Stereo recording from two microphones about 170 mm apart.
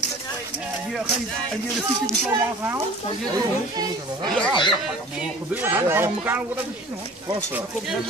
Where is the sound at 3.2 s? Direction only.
25° right (ahead or behind).